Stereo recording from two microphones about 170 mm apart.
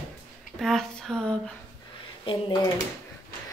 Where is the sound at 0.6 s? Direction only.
5° left (ahead or behind).